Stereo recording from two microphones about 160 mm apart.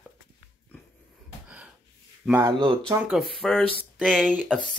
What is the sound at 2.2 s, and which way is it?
Speech, 5° right (ahead or behind).